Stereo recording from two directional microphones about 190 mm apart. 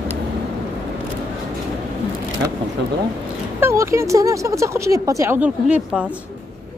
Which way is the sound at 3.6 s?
15° right (ahead or behind).